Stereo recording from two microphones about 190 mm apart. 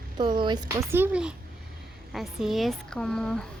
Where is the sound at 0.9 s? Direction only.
10° right (ahead or behind).